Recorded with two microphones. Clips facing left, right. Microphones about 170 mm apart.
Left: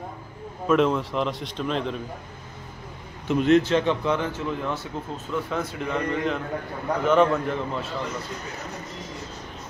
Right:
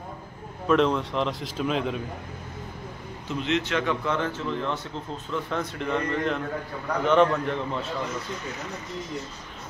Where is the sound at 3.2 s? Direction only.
45° left (ahead or behind).